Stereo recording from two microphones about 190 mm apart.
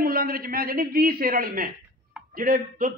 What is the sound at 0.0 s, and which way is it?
A man's voice, 50° right (ahead or behind).